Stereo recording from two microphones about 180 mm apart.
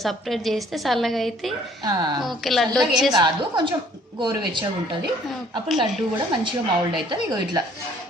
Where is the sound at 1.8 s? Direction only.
25° right (ahead or behind).